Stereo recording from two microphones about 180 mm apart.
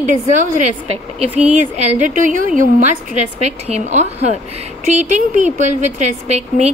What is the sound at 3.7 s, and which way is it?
A woman's voice, 40° right (ahead or behind).